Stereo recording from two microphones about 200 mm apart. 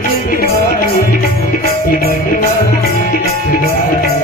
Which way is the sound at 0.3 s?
45° left (ahead or behind).